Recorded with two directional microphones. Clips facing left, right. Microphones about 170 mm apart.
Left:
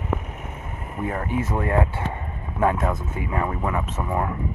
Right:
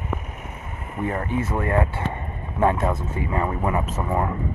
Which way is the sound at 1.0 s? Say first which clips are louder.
Right 1 dB; 10° left (ahead or behind).